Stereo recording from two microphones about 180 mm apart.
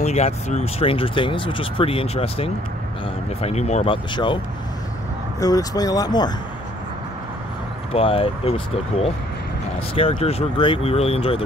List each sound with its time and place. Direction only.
0.0 s speech: 40° left (ahead or behind)
5.4 s speech: 20° left (ahead or behind)
7.9 s speech: 30° left (ahead or behind)